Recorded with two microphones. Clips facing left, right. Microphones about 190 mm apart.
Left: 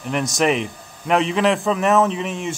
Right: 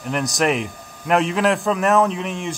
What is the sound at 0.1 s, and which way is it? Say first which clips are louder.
Speech: left 1 dB; centre (ahead or behind).